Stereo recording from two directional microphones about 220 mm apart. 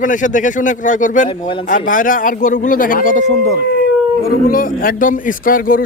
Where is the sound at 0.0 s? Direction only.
35° left (ahead or behind).